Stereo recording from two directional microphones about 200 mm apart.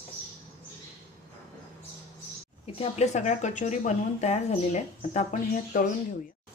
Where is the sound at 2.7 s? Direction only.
30° left (ahead or behind).